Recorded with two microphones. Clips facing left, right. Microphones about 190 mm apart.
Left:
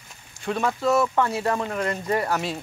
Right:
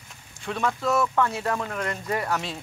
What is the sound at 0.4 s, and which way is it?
Speech, 5° left (ahead or behind).